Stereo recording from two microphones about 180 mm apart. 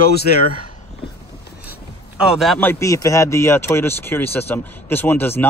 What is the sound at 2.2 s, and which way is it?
A man's voice, centre (ahead or behind).